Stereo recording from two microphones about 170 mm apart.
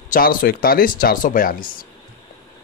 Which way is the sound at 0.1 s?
55° left (ahead or behind).